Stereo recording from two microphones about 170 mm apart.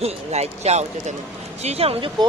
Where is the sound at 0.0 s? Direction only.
40° right (ahead or behind).